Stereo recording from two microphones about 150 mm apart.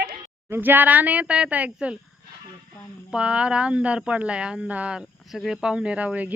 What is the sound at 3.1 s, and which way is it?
Speech, 5° right (ahead or behind).